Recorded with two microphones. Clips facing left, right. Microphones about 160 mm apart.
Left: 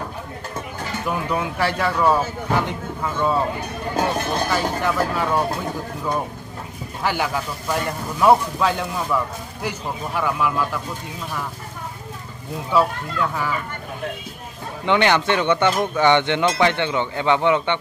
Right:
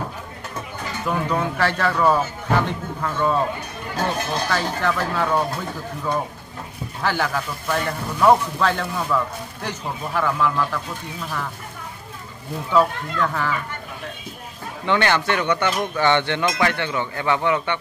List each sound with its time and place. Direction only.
1.0 s speech: 10° left (ahead or behind)
4.5 s speech: 15° left (ahead or behind)
7.0 s speech: 15° left (ahead or behind)
12.7 s speech: 10° left (ahead or behind)
14.9 s speech: 15° left (ahead or behind)